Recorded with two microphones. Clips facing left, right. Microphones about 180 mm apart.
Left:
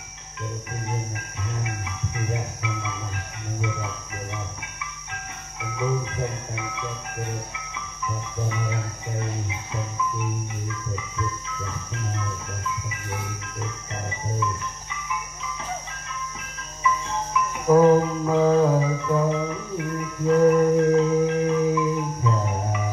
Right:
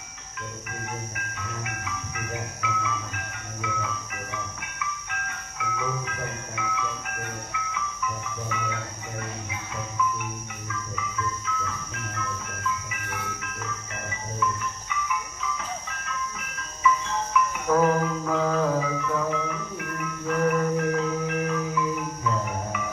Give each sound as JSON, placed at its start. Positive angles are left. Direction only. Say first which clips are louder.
{"t": 1.6, "sound": "speech", "louder": "left 1 dB", "side_deg": 25}
{"t": 5.6, "sound": "speech", "louder": "left 4 dB", "side_deg": 25}
{"t": 8.5, "sound": "speech", "louder": "left 2 dB", "side_deg": 25}
{"t": 14.4, "sound": "cricket", "louder": "right 1 dB", "side_deg": 25}
{"t": 16.3, "sound": "music", "louder": "even", "side_deg": 25}